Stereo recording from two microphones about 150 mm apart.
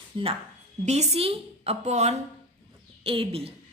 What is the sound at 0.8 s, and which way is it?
A woman's voice, 45° right (ahead or behind).